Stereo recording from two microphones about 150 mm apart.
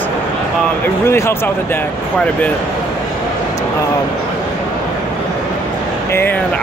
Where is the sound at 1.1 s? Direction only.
15° left (ahead or behind).